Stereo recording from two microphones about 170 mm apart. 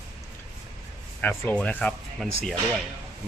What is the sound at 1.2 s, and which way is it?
Speech, 10° left (ahead or behind).